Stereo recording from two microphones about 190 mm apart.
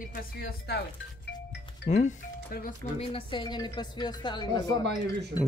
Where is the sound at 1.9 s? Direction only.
35° left (ahead or behind).